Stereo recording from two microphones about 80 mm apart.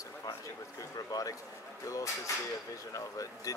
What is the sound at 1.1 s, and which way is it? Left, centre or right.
Speech, left.